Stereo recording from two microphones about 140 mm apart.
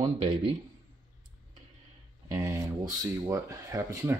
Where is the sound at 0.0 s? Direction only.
35° right (ahead or behind).